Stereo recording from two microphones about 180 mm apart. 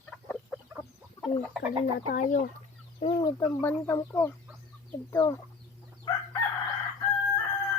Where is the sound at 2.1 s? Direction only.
45° left (ahead or behind).